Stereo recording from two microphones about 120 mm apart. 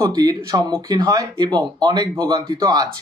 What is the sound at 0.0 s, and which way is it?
Speech, 35° right (ahead or behind).